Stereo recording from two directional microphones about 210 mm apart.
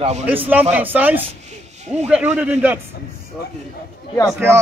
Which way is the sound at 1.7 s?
35° right (ahead or behind).